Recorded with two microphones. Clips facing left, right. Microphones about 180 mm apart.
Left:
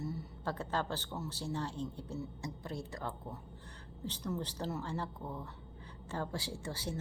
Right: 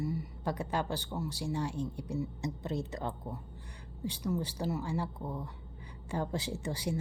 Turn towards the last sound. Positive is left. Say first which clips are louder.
# right 5 dB
turn(degrees=-15)  # may be behind; listen again after turning